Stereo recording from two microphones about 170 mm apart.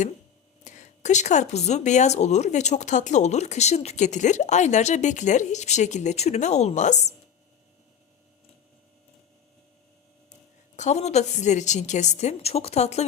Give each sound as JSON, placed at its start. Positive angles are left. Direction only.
{"t": 0.6, "sound": "speech", "side_deg": 45}
{"t": 10.8, "sound": "a woman's voice", "side_deg": 40}